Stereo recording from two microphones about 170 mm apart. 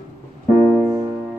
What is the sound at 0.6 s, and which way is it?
Music, centre (ahead or behind).